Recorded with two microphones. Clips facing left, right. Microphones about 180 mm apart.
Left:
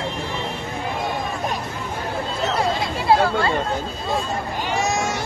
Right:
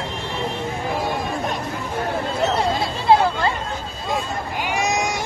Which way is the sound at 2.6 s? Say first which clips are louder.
Even; 20° right (ahead or behind).